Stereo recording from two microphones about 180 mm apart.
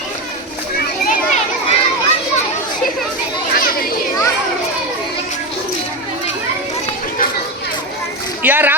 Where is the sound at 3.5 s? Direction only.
55° left (ahead or behind).